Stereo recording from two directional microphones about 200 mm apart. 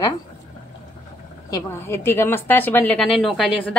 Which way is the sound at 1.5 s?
15° left (ahead or behind).